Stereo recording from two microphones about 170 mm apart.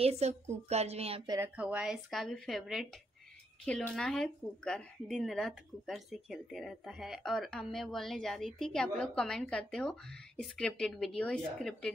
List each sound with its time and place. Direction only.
0.0 s a woman's voice: 40° right (ahead or behind)
1.3 s a woman's voice: 10° right (ahead or behind); by 11.9 s 5° left (ahead or behind)